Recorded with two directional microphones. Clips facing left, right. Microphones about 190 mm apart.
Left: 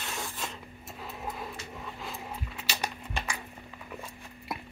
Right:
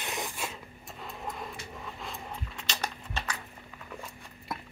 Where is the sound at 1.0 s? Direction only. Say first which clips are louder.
Left 1 dB; 5° left (ahead or behind).